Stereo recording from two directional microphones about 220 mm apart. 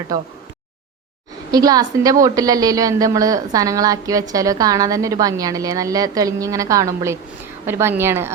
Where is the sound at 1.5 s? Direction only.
15° right (ahead or behind).